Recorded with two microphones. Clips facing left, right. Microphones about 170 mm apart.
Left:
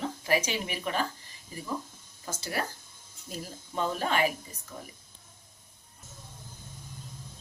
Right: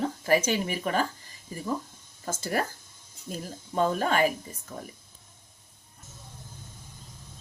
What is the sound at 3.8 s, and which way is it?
Speech, 45° right (ahead or behind).